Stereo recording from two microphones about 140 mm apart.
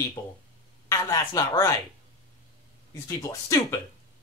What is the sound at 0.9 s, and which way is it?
Speech, 25° left (ahead or behind).